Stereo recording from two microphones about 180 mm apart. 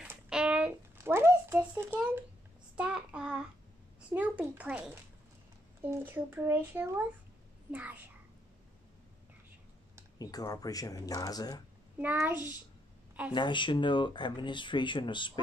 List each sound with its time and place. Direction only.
0.0 s a child's voice: 5° right (ahead or behind)
10.1 s speech: 20° left (ahead or behind)
12.0 s speech: 10° right (ahead or behind)
13.3 s speech: 25° left (ahead or behind)